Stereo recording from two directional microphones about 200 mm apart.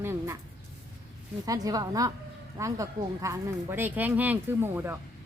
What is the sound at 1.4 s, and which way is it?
Speech, 20° right (ahead or behind).